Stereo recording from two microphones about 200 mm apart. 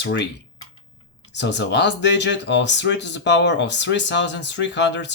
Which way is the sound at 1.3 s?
60° left (ahead or behind).